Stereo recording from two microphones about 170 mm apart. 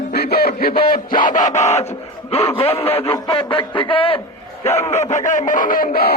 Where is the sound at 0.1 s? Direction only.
65° left (ahead or behind); by 1.9 s 40° left (ahead or behind).